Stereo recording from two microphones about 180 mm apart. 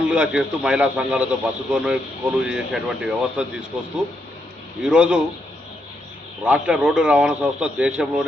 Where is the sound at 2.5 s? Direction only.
5° right (ahead or behind).